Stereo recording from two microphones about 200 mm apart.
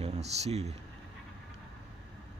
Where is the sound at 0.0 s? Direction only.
35° right (ahead or behind).